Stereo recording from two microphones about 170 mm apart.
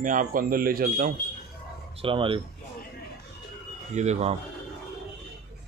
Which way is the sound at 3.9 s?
40° right (ahead or behind).